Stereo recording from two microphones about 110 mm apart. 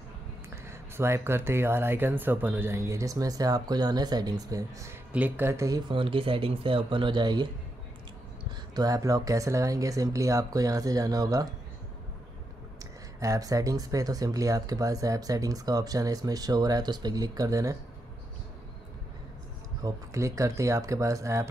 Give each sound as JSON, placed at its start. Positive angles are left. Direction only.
{"t": 0.7, "sound": "speech", "side_deg": -20}
{"t": 5.1, "sound": "speech", "side_deg": -15}
{"t": 5.9, "sound": "speech", "side_deg": -50}
{"t": 8.7, "sound": "speech", "side_deg": -35}
{"t": 12.7, "sound": "speech", "side_deg": -30}
{"t": 19.8, "sound": "speech", "side_deg": -30}